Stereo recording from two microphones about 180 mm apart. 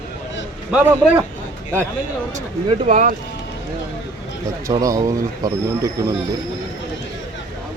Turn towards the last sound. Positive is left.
turn(degrees=-20)  # may be behind; listen again after turning